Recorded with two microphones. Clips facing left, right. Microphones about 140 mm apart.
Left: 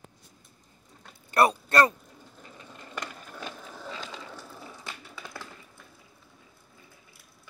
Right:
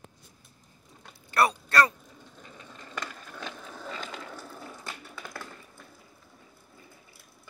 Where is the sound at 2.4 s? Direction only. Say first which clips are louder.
Even; 5° left (ahead or behind).